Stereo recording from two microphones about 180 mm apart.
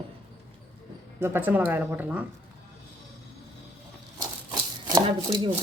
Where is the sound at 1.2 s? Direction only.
10° right (ahead or behind).